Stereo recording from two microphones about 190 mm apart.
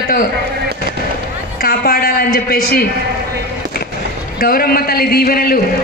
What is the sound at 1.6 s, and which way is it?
Speech, 50° left (ahead or behind).